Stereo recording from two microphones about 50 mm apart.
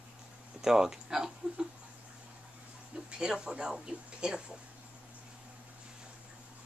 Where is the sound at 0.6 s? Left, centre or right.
Centre.